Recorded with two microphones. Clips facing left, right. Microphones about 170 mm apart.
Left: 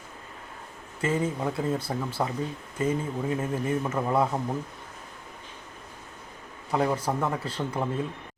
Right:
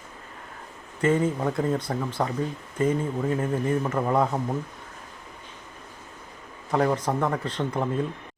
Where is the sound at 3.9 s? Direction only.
15° right (ahead or behind).